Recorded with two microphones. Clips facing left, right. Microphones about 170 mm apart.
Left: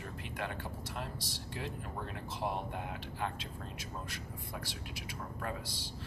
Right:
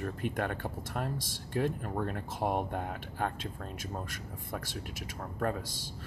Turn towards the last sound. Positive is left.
turn(degrees=-45)  # may be behind; listen again after turning